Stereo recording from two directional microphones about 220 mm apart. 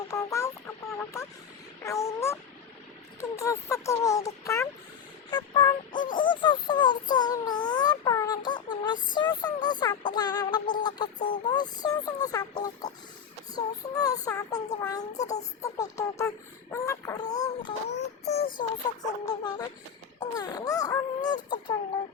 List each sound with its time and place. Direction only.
0.1 s chicken: 15° left (ahead or behind)
0.9 s speech: 10° left (ahead or behind)
1.8 s a sound: 15° left (ahead or behind)
3.2 s speech: 15° left (ahead or behind)
5.3 s music: 20° left (ahead or behind)
6.1 s a sound: 20° left (ahead or behind)
9.1 s music: 20° left (ahead or behind)
11.4 s speech: 20° left (ahead or behind)
15.1 s child singing: 30° left (ahead or behind)
15.6 s speech: 15° left (ahead or behind)
18.3 s child singing: 35° left (ahead or behind)
19.2 s speech: 15° left (ahead or behind)
21.2 s music: 20° left (ahead or behind)